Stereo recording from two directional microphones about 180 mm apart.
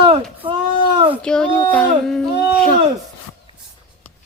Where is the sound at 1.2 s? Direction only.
5° left (ahead or behind).